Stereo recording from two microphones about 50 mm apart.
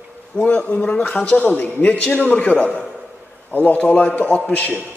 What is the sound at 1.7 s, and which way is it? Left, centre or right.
A man's voice, left.